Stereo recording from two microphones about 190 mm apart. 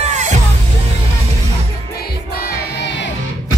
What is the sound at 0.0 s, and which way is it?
Music, 40° right (ahead or behind).